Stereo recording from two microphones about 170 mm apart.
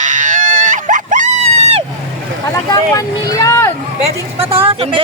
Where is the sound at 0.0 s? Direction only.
45° right (ahead or behind).